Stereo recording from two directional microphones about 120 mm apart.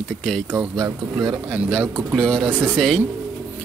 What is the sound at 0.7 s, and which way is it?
Speech, 30° right (ahead or behind).